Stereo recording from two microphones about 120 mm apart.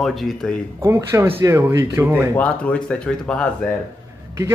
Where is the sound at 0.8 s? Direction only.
25° right (ahead or behind).